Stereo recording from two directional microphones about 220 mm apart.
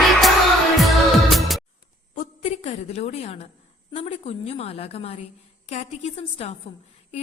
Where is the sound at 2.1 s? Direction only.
35° left (ahead or behind).